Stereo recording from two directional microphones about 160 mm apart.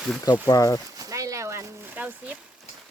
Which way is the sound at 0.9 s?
20° right (ahead or behind).